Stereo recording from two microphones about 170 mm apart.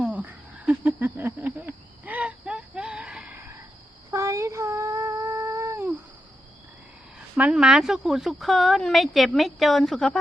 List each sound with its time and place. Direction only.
0.0 s a sound: 10° right (ahead or behind)
4.1 s cat: 20° right (ahead or behind)
7.3 s speech: 5° right (ahead or behind)